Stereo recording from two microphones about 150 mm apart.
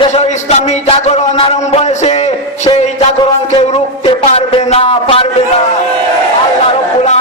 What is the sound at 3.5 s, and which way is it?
A man's voice, 45° left (ahead or behind).